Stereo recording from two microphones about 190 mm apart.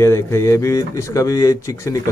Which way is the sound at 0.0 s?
15° left (ahead or behind).